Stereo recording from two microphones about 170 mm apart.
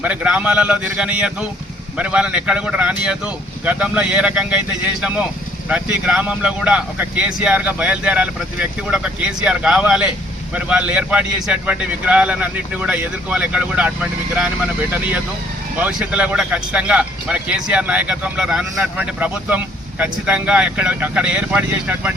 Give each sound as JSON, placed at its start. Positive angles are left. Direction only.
{"t": 0.0, "sound": "speech", "side_deg": -10}
{"t": 15.8, "sound": "speech", "side_deg": -5}